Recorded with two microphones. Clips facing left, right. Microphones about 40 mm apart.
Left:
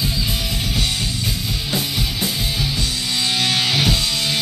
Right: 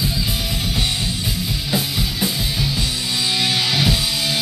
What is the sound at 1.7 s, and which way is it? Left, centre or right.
Music, centre.